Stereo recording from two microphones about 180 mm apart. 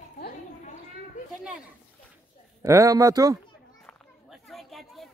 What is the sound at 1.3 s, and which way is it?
Speech, 5° right (ahead or behind).